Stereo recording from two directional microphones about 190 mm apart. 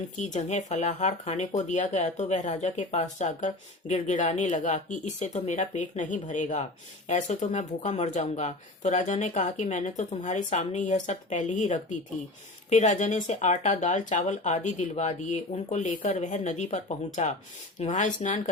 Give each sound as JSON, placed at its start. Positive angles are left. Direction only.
{"t": 0.2, "sound": "speech", "side_deg": 35}